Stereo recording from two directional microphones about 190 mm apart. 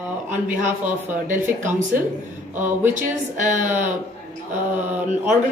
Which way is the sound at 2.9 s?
40° right (ahead or behind).